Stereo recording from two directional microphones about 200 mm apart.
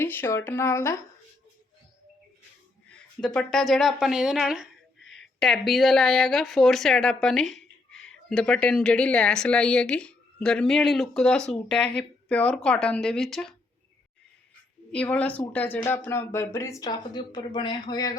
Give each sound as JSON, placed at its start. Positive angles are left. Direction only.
{"t": 0.0, "sound": "speech", "side_deg": 10}
{"t": 3.2, "sound": "a woman's voice", "side_deg": 5}
{"t": 14.9, "sound": "speech", "side_deg": 5}